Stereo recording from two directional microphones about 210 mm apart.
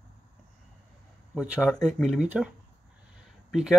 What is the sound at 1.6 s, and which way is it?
Speech, centre (ahead or behind).